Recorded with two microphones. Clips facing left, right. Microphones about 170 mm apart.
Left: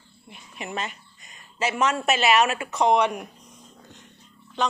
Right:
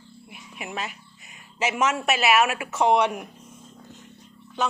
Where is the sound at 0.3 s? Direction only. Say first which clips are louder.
Left 2 dB; 5° right (ahead or behind).